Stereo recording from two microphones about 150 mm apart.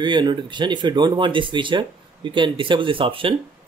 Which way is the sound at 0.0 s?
30° right (ahead or behind).